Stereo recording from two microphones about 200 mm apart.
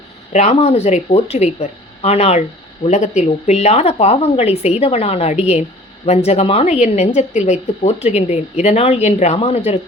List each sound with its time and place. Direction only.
0.3 s speech: 30° left (ahead or behind)